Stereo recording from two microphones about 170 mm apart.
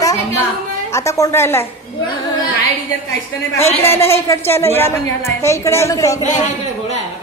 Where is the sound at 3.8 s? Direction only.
15° left (ahead or behind).